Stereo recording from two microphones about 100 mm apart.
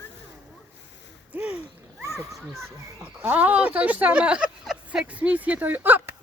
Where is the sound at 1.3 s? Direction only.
15° right (ahead or behind).